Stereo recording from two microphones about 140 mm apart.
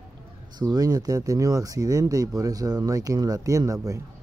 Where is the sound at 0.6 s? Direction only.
30° right (ahead or behind).